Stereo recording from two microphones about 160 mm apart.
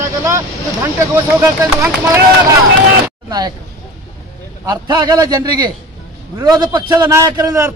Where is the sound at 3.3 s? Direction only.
25° right (ahead or behind).